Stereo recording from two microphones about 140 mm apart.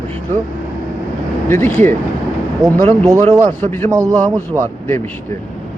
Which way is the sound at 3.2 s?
45° right (ahead or behind).